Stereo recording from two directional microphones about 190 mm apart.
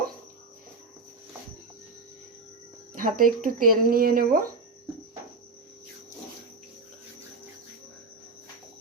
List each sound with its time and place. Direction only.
2.9 s speech: 45° right (ahead or behind)